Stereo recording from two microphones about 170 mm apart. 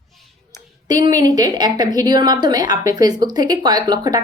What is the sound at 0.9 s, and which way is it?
A woman's voice, 20° right (ahead or behind).